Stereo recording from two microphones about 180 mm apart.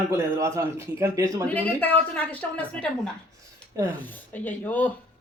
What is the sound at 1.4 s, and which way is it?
A woman's voice, 10° left (ahead or behind).